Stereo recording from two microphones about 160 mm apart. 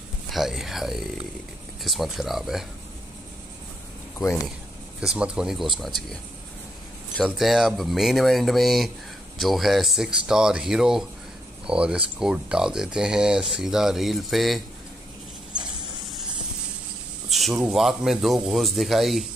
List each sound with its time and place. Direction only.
0.3 s speech: centre (ahead or behind)
5.0 s speech: 5° right (ahead or behind)
7.2 s speech: centre (ahead or behind)
15.5 s mechanisms: 25° right (ahead or behind)
17.3 s speech: centre (ahead or behind)